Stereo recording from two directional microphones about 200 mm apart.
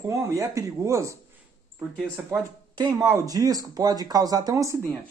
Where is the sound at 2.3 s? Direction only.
20° right (ahead or behind).